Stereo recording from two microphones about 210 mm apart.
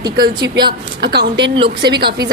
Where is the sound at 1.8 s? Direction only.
50° right (ahead or behind).